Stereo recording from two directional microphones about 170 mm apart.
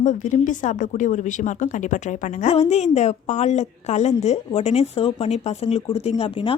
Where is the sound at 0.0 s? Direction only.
45° left (ahead or behind).